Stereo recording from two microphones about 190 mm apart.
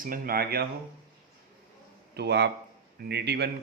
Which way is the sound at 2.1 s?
60° right (ahead or behind).